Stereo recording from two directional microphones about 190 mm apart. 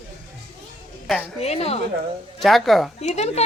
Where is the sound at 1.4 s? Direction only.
35° left (ahead or behind).